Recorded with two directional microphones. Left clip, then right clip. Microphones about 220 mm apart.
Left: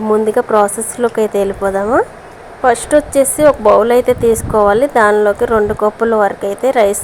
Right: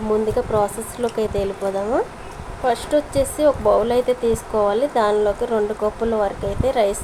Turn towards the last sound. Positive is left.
turn(degrees=25)  # may be behind; listen again after turning